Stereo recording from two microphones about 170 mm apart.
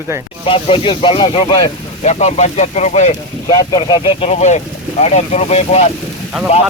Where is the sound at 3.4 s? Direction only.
25° left (ahead or behind); by 5.9 s 40° left (ahead or behind).